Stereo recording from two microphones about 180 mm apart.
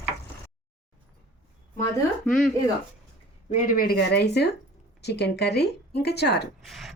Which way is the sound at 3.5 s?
45° left (ahead or behind).